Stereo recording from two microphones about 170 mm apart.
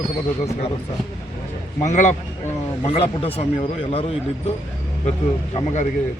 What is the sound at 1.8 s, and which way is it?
Speech, 45° left (ahead or behind).